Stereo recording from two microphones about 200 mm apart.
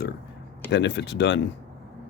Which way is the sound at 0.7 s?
60° left (ahead or behind).